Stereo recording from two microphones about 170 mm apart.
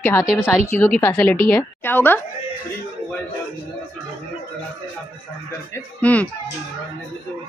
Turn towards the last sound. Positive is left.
turn(degrees=10)  # may be behind; listen again after turning